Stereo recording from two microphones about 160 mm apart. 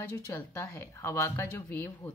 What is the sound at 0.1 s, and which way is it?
Speech, 15° left (ahead or behind).